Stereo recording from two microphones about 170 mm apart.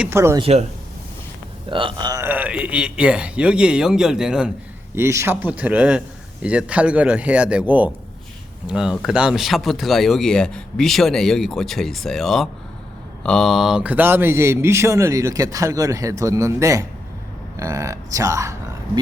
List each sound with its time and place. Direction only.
0.0 s speech: 15° right (ahead or behind)
0.3 s speech: 35° right (ahead or behind)
1.7 s a sound: 30° right (ahead or behind)
2.2 s speech: 10° right (ahead or behind)
4.9 s speech: 15° right (ahead or behind)